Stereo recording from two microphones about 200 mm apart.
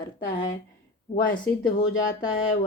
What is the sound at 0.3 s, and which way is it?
Speech, 25° left (ahead or behind).